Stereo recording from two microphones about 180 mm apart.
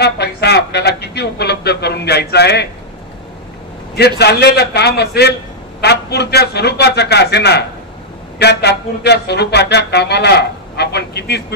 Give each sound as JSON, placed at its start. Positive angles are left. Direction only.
{"t": 0.0, "sound": "music", "side_deg": 65}
{"t": 4.2, "sound": "a man's voice", "side_deg": 70}
{"t": 8.4, "sound": "music", "side_deg": 65}